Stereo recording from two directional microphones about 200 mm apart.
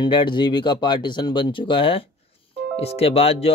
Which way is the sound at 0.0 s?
25° left (ahead or behind).